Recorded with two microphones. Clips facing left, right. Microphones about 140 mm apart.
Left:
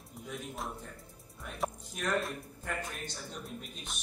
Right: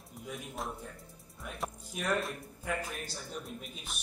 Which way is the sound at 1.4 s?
Centre (ahead or behind).